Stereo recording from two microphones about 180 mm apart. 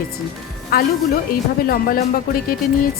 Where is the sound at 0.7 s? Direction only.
55° left (ahead or behind).